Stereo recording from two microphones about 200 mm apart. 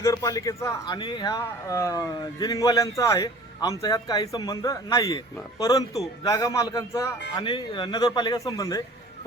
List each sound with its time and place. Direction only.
0.0 s speech: 15° left (ahead or behind)